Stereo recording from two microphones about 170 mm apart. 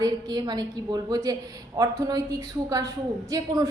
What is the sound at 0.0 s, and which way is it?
A woman's voice, 25° right (ahead or behind).